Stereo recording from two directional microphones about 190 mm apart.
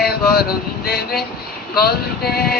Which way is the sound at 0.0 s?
55° left (ahead or behind).